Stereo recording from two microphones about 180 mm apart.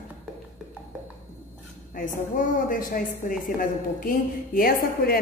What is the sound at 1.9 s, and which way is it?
A woman's voice, 50° left (ahead or behind).